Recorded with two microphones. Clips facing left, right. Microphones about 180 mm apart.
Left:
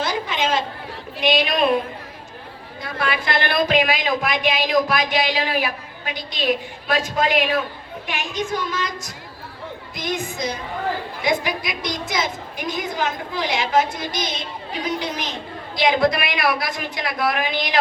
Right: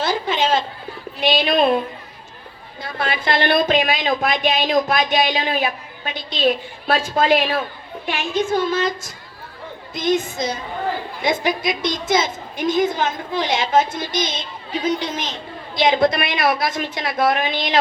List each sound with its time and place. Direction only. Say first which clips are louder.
0.0 s a sound: right 3 dB; 30° right (ahead or behind)
1.2 s speech: right 2 dB; 30° right (ahead or behind)
2.8 s speech: right 1 dB; 25° right (ahead or behind)